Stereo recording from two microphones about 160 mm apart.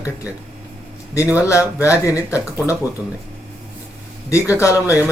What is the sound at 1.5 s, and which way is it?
Speech, 20° left (ahead or behind).